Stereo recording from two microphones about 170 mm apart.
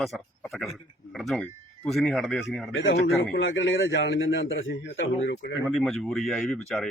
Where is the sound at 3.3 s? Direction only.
90° left.